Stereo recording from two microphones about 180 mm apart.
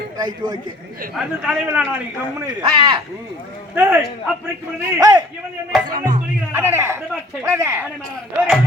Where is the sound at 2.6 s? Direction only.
30° right (ahead or behind).